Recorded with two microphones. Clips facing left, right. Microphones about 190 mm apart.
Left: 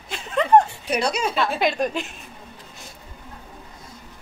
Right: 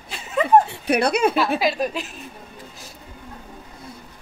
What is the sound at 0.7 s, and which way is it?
Speech, 60° right (ahead or behind).